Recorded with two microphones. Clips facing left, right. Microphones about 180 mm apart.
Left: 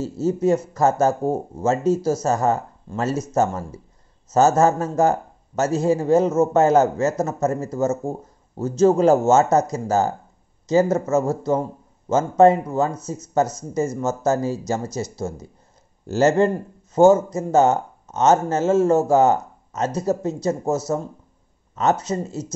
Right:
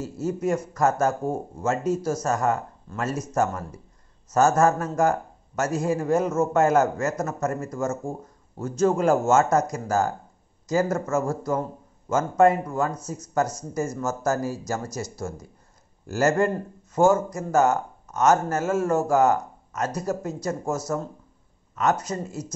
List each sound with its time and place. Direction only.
0.0 s a man's voice: 25° left (ahead or behind)